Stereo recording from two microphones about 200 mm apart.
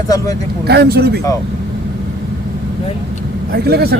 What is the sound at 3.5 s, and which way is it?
Speech, 50° right (ahead or behind).